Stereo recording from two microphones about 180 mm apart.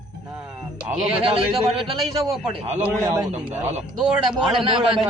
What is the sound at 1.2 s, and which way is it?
Speech, 30° right (ahead or behind).